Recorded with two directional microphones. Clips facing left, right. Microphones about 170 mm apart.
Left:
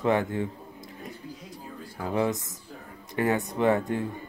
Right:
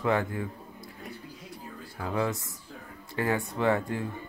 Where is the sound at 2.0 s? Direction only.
25° left (ahead or behind).